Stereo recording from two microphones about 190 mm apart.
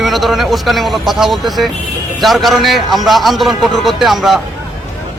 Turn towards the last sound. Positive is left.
turn(degrees=0)  # may be behind; listen again after turning